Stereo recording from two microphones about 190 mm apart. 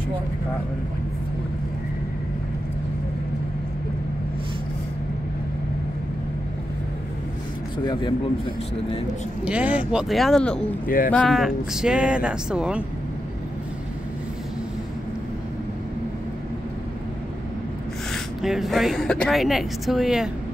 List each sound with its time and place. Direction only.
7.8 s speech: 25° left (ahead or behind)
9.4 s speech: 5° right (ahead or behind)
18.1 s speech: centre (ahead or behind)